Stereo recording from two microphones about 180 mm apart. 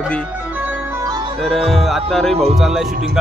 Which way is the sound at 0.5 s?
10° right (ahead or behind).